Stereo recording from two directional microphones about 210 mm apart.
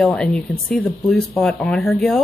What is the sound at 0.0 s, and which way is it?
Speech, 5° left (ahead or behind).